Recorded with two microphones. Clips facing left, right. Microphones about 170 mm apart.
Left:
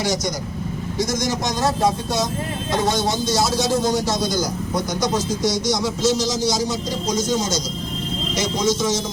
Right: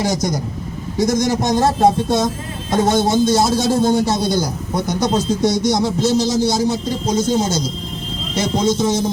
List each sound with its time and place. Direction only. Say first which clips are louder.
1.0 s speech: right 8 dB; 55° right (ahead or behind)